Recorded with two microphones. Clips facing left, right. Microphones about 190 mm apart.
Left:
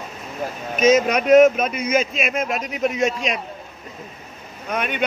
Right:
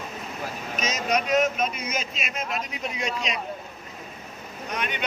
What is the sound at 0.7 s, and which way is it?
Speech, 55° left (ahead or behind).